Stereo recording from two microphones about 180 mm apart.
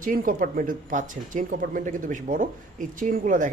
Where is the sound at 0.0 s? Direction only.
50° right (ahead or behind).